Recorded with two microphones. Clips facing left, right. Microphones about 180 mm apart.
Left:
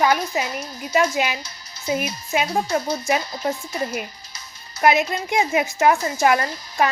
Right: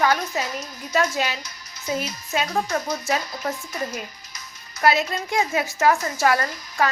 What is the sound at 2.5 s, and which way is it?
Speech, 30° left (ahead or behind).